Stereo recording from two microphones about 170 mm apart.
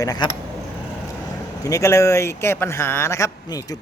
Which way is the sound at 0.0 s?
20° left (ahead or behind).